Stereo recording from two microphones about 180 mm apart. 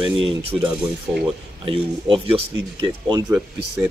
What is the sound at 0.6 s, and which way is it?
Speech, 5° right (ahead or behind).